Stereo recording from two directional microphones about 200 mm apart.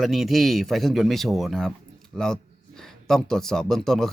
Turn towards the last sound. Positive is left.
turn(degrees=0)  # may be behind; listen again after turning